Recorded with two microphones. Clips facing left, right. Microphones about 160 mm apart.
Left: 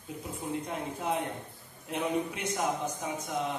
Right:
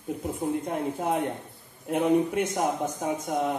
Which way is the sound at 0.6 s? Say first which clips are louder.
Right 6 dB; 50° right (ahead or behind).